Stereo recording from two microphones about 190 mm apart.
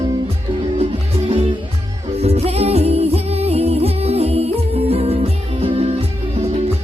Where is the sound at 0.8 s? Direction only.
30° right (ahead or behind).